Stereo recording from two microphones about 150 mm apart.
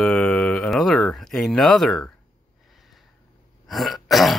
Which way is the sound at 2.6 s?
Centre (ahead or behind).